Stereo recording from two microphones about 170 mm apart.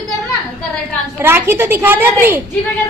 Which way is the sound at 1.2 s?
15° right (ahead or behind).